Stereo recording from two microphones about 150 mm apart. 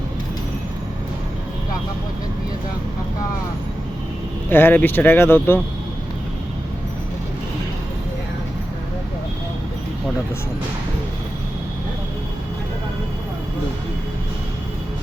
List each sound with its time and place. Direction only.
4.4 s speech: 15° left (ahead or behind)